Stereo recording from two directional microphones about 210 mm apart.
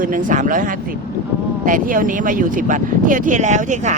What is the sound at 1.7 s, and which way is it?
Speech, 40° right (ahead or behind).